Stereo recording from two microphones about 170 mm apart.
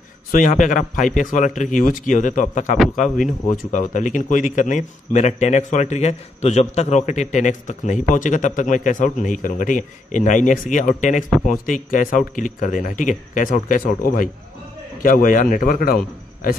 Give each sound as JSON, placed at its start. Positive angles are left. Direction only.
{"t": 0.3, "sound": "a man's voice", "side_deg": 50}